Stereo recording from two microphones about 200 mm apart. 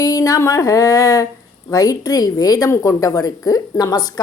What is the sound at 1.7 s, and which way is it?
A woman's voice, 20° left (ahead or behind).